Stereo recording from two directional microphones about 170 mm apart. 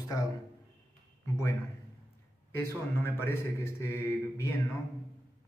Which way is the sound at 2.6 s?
15° left (ahead or behind).